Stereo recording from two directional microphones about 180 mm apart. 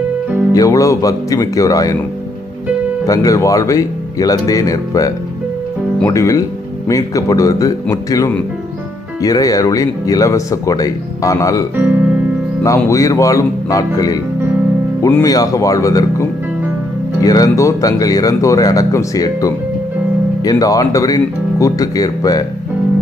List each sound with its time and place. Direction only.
0.5 s speech: 20° left (ahead or behind)
3.1 s speech: 20° left (ahead or behind)
11.8 s music: 10° right (ahead or behind)
12.6 s speech: 15° left (ahead or behind)
15.2 s speech: 20° left (ahead or behind)